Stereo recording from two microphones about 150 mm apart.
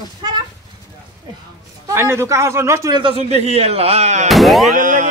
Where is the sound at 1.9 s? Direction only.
20° right (ahead or behind).